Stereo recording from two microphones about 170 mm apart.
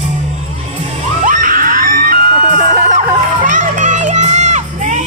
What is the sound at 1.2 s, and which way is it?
Screaming, 50° right (ahead or behind).